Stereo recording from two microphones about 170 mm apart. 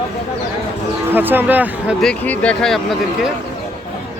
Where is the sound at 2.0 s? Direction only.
5° left (ahead or behind).